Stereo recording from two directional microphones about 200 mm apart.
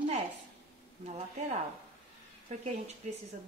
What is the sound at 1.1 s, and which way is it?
Speech, 35° right (ahead or behind).